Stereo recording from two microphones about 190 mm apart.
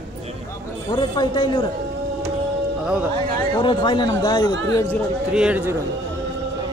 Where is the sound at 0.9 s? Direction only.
25° left (ahead or behind).